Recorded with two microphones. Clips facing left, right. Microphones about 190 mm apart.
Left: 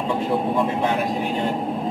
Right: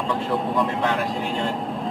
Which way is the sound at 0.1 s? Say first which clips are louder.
Left 2 dB; 15° left (ahead or behind).